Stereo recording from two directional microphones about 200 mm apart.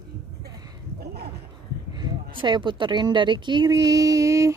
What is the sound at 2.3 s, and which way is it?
Speech, 25° right (ahead or behind).